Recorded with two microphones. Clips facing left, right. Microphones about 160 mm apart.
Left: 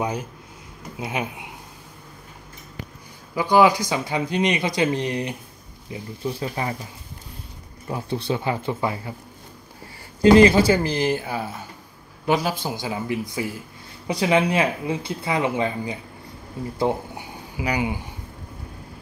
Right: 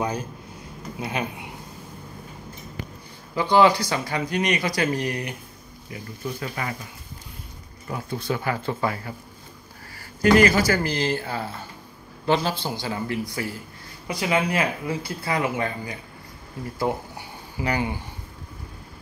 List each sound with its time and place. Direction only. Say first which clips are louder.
0.0 s speech: left 1 dB; 20° left (ahead or behind)
3.3 s speech: left 1 dB; 10° left (ahead or behind); by 6.7 s 25° left (ahead or behind)
7.9 s speech: left 2 dB; 30° left (ahead or behind)
8.5 s speech: left 1 dB; 15° left (ahead or behind)
10.2 s speech: left 4 dB; 25° left (ahead or behind)